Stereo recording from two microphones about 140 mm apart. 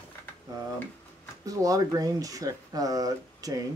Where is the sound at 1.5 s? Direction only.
25° right (ahead or behind).